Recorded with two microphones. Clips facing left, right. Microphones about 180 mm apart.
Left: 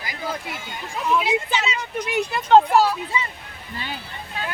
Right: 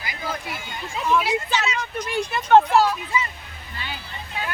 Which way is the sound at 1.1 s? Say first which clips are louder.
Even; 20° left (ahead or behind).